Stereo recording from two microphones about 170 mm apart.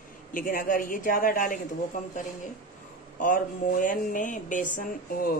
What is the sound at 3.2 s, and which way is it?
Speech, 50° left (ahead or behind).